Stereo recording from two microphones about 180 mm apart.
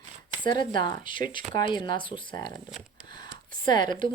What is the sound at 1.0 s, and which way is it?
Speech, 50° right (ahead or behind).